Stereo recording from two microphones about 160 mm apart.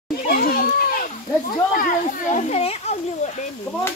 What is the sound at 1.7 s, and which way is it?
A child's voice, 60° left (ahead or behind).